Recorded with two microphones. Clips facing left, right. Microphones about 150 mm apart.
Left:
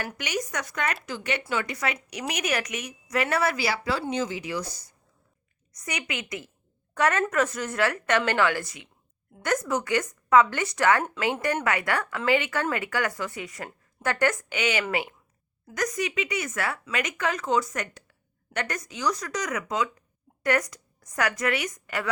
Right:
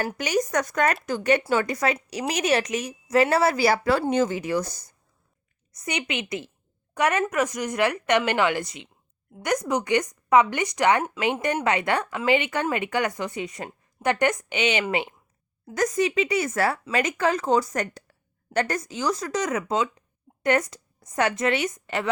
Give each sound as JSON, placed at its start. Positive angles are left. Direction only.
{"t": 0.0, "sound": "speech", "side_deg": -40}
{"t": 5.8, "sound": "a woman's voice", "side_deg": -25}
{"t": 6.9, "sound": "a woman's voice", "side_deg": -15}